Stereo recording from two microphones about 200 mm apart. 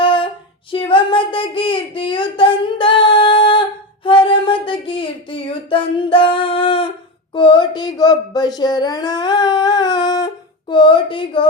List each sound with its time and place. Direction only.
0.0 s female singing: 25° left (ahead or behind)
0.7 s a sound: 25° left (ahead or behind)
7.3 s speech: 25° left (ahead or behind)